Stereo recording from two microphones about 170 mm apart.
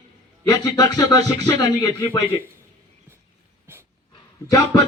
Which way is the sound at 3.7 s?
15° right (ahead or behind).